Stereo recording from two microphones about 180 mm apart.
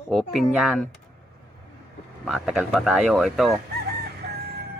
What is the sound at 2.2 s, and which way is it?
Speech, centre (ahead or behind).